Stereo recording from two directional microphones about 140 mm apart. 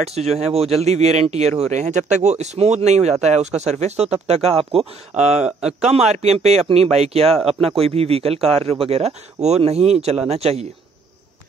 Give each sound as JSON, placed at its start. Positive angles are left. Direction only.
{"t": 0.0, "sound": "speech", "side_deg": -50}
{"t": 5.6, "sound": "a man's voice", "side_deg": -5}
{"t": 5.9, "sound": "speech", "side_deg": -55}